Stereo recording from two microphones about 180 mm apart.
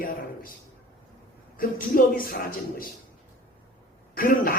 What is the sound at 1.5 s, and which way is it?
Speech, 50° left (ahead or behind).